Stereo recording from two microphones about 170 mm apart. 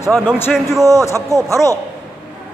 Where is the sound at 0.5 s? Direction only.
Centre (ahead or behind).